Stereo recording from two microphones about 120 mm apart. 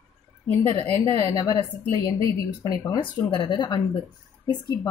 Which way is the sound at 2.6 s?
35° left (ahead or behind).